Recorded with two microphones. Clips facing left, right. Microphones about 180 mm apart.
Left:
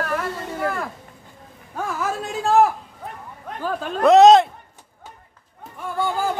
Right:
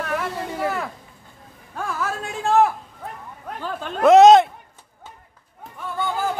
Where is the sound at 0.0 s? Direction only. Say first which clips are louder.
Even; centre (ahead or behind).